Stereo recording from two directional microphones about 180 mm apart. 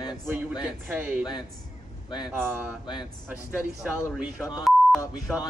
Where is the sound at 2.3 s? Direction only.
10° right (ahead or behind).